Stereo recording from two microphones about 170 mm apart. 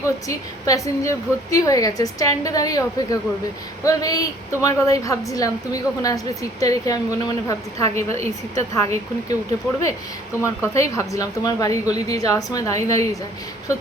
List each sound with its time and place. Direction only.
0.0 s a woman's voice: 20° left (ahead or behind)
7.9 s a woman's voice: 40° right (ahead or behind)
8.7 s a woman's voice: 20° left (ahead or behind)
10.4 s a woman's voice: 20° left (ahead or behind)